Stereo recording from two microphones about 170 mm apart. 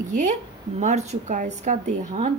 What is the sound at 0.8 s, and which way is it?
A woman's voice, 40° right (ahead or behind).